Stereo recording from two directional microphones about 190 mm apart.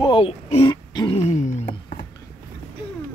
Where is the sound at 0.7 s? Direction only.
25° left (ahead or behind).